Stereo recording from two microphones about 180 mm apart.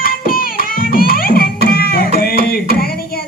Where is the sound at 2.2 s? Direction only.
55° left (ahead or behind).